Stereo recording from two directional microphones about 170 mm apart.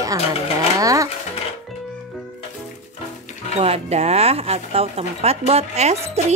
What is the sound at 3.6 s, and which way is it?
Speech, 40° right (ahead or behind).